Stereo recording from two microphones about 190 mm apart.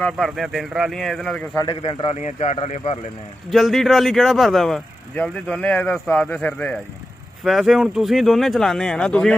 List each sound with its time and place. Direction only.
0.0 s speech: centre (ahead or behind)
1.6 s a man's voice: 25° left (ahead or behind)
3.4 s speech: centre (ahead or behind)